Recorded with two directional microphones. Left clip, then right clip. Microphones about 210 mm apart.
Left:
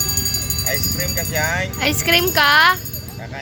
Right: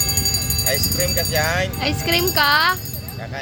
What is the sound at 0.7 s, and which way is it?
Speech, 45° right (ahead or behind).